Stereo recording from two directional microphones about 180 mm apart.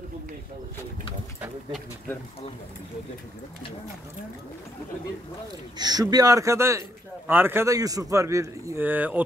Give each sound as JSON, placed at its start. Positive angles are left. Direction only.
{"t": 5.8, "sound": "a man's voice", "side_deg": -20}